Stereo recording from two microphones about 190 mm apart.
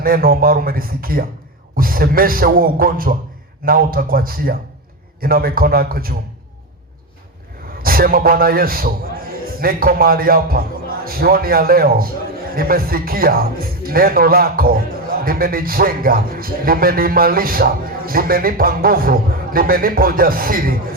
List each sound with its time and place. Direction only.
0.0 s speech: 50° right (ahead or behind)
7.8 s a man's voice: 50° right (ahead or behind)